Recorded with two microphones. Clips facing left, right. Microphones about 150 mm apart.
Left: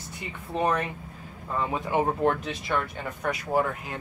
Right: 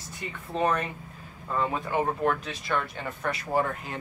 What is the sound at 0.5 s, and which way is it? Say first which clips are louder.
Speech: left 1 dB; 10° left (ahead or behind).